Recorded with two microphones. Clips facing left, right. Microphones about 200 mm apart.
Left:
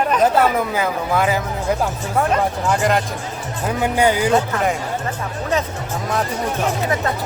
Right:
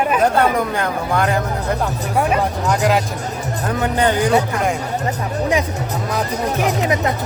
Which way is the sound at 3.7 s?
10° left (ahead or behind).